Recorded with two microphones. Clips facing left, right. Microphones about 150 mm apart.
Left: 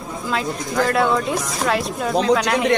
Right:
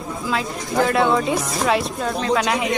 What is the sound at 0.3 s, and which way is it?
Speech, centre (ahead or behind).